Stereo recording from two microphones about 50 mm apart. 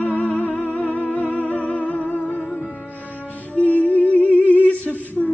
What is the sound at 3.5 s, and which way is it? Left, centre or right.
Music, left.